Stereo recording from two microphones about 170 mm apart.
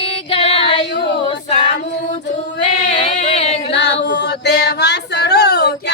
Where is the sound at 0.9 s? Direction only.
90° left.